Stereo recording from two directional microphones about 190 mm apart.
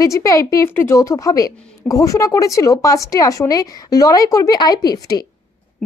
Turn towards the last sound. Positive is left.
turn(degrees=20)  # may be behind; listen again after turning